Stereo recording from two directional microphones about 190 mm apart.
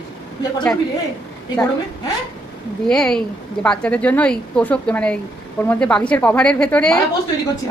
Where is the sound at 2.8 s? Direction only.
Centre (ahead or behind).